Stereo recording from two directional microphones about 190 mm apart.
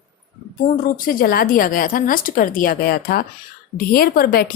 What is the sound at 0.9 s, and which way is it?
Speech, 50° left (ahead or behind).